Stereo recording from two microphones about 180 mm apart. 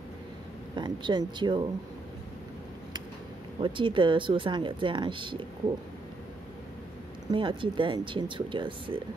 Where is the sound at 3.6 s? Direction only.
25° right (ahead or behind).